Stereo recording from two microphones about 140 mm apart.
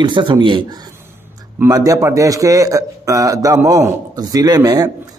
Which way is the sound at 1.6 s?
25° right (ahead or behind).